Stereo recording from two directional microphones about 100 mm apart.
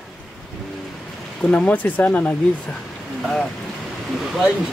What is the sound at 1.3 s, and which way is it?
Speech, 10° left (ahead or behind).